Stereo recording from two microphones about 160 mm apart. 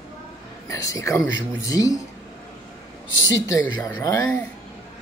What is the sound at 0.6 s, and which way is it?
Speech, 20° left (ahead or behind).